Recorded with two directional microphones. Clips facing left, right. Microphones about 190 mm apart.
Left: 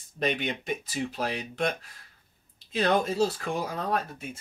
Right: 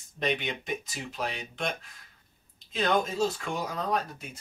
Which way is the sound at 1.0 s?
Centre (ahead or behind).